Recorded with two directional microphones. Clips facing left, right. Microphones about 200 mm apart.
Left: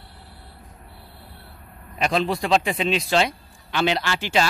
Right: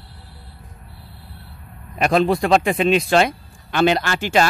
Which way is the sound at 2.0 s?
55° right (ahead or behind).